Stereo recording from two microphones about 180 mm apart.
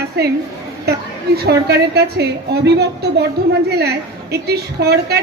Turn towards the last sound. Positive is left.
turn(degrees=-60)  # may be behind; listen again after turning